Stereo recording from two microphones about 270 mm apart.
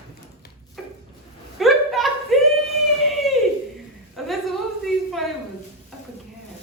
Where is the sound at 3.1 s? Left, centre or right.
Centre.